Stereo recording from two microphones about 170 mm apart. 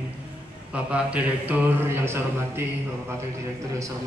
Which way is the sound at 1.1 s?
10° right (ahead or behind).